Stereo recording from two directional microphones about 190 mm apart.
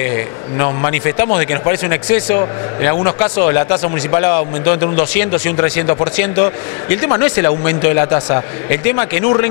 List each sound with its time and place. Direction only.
0.9 s speech: 20° left (ahead or behind)